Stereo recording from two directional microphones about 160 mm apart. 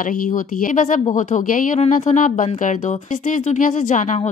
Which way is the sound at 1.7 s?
45° left (ahead or behind).